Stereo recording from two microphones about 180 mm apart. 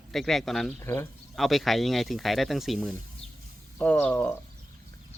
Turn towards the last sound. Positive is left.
turn(degrees=5)  # may be behind; listen again after turning